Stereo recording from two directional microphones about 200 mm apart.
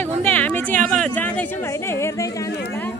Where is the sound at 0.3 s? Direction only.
10° left (ahead or behind).